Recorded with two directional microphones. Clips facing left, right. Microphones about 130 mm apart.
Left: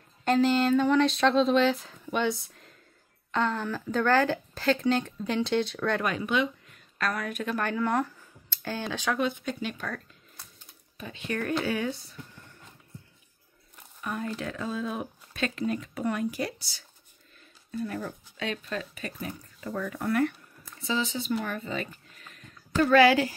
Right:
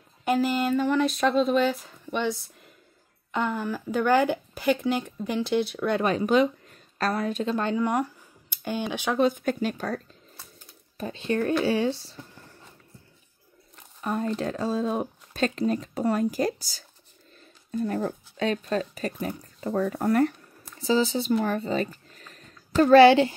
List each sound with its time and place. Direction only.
0.2 s speech: 10° right (ahead or behind)
3.3 s speech: 15° right (ahead or behind)
6.0 s a woman's voice: 35° right (ahead or behind); by 9.2 s 20° right (ahead or behind)
9.2 s speech: 45° right (ahead or behind); by 12.4 s 30° right (ahead or behind)
14.0 s speech: 35° right (ahead or behind)
21.5 s a sound: 35° right (ahead or behind)